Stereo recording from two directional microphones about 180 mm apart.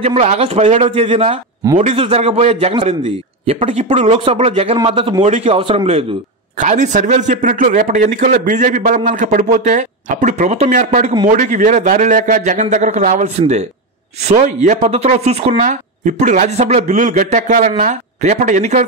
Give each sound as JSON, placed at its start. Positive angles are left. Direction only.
{"t": 0.0, "sound": "speech", "side_deg": -35}